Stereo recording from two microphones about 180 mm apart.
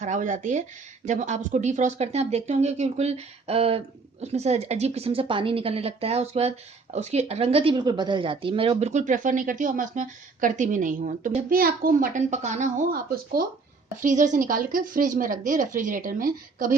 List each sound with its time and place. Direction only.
0.0 s speech: 40° right (ahead or behind)